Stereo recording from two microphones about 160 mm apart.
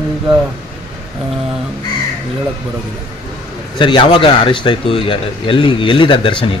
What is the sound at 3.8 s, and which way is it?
Speech, 30° left (ahead or behind).